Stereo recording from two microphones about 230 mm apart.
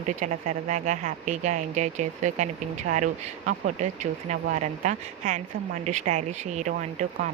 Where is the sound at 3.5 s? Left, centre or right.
Right.